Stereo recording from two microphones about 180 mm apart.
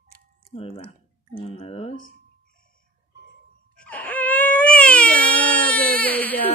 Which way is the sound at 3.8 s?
10° left (ahead or behind).